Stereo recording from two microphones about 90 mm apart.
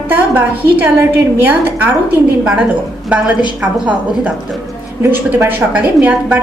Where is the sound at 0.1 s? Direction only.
20° right (ahead or behind).